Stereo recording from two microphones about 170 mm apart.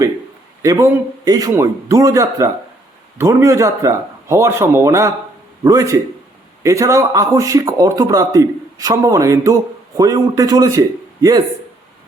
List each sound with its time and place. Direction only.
0.6 s speech: 20° right (ahead or behind)